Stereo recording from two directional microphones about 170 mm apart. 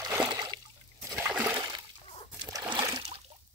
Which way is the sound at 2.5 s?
25° right (ahead or behind).